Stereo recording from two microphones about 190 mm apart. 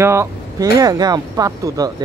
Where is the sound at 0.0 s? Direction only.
15° right (ahead or behind).